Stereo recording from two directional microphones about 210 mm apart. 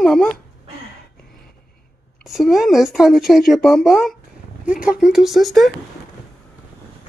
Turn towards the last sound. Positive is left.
turn(degrees=0)  # may be behind; listen again after turning